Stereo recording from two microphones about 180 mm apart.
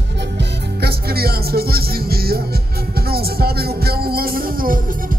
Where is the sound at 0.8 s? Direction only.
60° right (ahead or behind).